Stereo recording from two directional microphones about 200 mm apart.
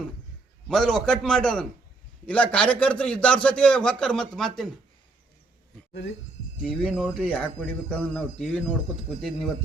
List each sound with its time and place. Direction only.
0.7 s a man's voice: centre (ahead or behind)
5.9 s speech: 60° left (ahead or behind)
6.7 s a man's voice: centre (ahead or behind)